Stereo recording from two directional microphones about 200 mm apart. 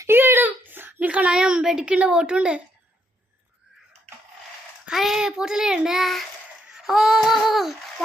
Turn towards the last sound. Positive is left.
turn(degrees=0)  # may be behind; listen again after turning